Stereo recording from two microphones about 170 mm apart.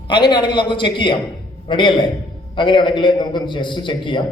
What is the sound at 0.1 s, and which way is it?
A man's voice, 25° left (ahead or behind).